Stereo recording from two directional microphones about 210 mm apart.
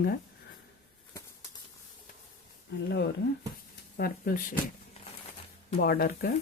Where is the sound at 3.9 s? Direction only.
45° left (ahead or behind).